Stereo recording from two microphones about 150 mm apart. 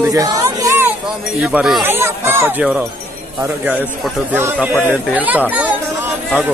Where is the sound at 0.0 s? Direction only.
25° right (ahead or behind).